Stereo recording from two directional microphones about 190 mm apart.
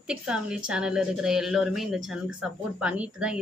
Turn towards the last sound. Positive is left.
turn(degrees=-5)  # may be behind; listen again after turning